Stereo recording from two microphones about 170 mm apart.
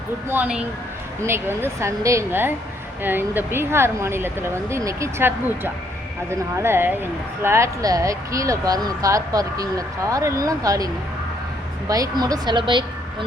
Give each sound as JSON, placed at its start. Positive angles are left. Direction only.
{"t": 0.3, "sound": "speech", "side_deg": -10}